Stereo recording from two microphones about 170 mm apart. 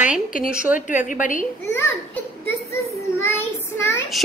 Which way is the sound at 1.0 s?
50° left (ahead or behind).